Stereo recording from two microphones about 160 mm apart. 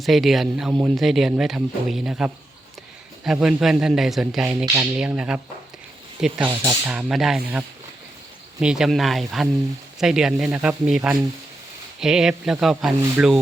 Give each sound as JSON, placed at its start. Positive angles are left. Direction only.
{"t": 0.0, "sound": "speech", "side_deg": 0}
{"t": 4.6, "sound": "speech", "side_deg": -20}
{"t": 4.9, "sound": "speech", "side_deg": -5}
{"t": 6.8, "sound": "speech", "side_deg": -5}
{"t": 8.6, "sound": "speech", "side_deg": -5}